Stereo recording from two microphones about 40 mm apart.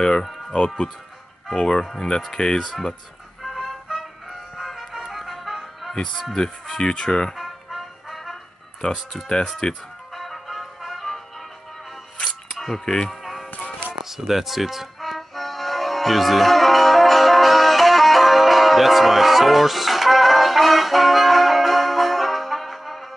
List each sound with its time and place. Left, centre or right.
0.0 s music: centre
1.5 s speech: centre
3.4 s music: centre
5.9 s speech: centre
7.3 s music: centre
8.8 s speech: centre
10.1 s music: centre
12.2 s music: centre
12.5 s music: centre
12.8 s speech: centre
13.1 s music: centre